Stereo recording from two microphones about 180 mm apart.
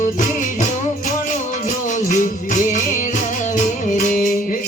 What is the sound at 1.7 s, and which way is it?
Music, 45° left (ahead or behind).